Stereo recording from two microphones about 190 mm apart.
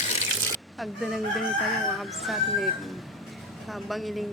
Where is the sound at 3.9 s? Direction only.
Centre (ahead or behind).